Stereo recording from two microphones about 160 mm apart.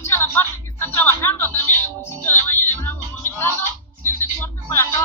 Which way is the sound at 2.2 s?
15° left (ahead or behind).